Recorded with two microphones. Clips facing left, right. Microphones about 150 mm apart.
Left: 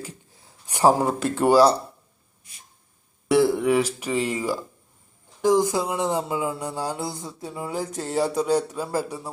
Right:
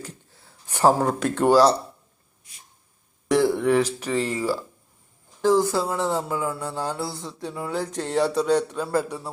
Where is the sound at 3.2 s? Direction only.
10° left (ahead or behind).